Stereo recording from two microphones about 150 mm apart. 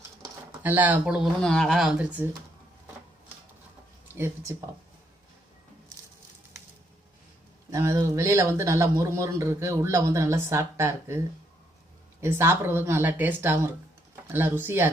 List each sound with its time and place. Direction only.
0.6 s speech: 10° right (ahead or behind)
4.1 s speech: 15° right (ahead or behind)
7.7 s a man's voice: 20° right (ahead or behind)
12.2 s speech: 15° right (ahead or behind)